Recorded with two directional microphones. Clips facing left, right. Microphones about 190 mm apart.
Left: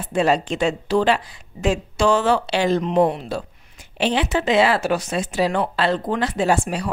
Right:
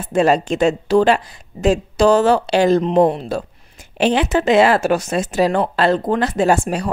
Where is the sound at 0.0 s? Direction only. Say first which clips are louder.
Right 4 dB; 45° right (ahead or behind).